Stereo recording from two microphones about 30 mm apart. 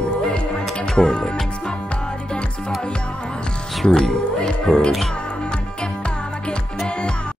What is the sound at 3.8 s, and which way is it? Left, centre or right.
Speech, centre.